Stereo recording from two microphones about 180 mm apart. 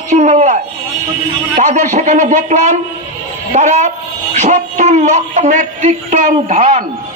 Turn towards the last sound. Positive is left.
turn(degrees=-45)  # may be behind; listen again after turning